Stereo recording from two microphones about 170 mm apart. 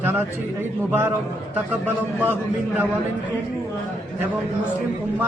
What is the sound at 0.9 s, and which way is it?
Speech, 10° right (ahead or behind).